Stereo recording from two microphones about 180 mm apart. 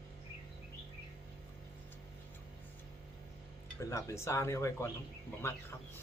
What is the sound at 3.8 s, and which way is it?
Speech, 15° left (ahead or behind).